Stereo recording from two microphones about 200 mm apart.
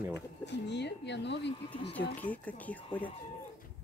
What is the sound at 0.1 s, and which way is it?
Speech, 60° left (ahead or behind).